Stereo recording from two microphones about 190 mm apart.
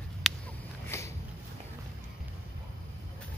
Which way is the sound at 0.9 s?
15° left (ahead or behind).